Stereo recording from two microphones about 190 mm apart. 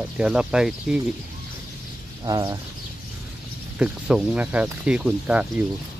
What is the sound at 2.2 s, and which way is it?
Speech, 20° right (ahead or behind).